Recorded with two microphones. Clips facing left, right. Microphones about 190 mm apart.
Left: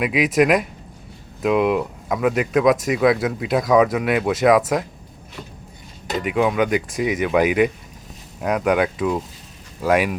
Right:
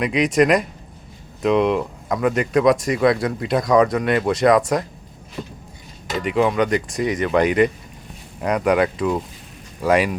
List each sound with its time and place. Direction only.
0.0 s speech: 5° left (ahead or behind)
5.4 s a sound: 25° right (ahead or behind)
6.2 s speech: 5° left (ahead or behind)